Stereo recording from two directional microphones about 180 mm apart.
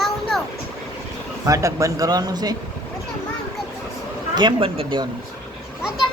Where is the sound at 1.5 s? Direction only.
15° right (ahead or behind).